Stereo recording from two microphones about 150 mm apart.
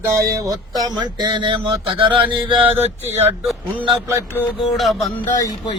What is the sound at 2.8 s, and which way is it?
Speech, 45° right (ahead or behind).